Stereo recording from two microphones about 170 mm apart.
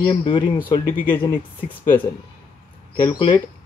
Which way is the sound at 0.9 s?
10° left (ahead or behind).